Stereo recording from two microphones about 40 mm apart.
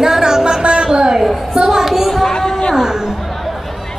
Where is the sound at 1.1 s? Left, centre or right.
Centre.